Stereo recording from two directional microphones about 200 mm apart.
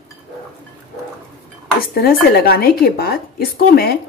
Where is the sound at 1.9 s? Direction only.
50° left (ahead or behind).